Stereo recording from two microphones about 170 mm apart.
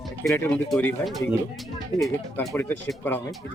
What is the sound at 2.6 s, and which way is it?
Speech, 10° left (ahead or behind).